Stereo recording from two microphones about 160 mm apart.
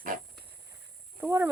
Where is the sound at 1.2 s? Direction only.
15° right (ahead or behind).